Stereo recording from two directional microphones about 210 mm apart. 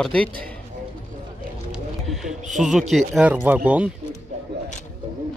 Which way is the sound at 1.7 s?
Centre (ahead or behind).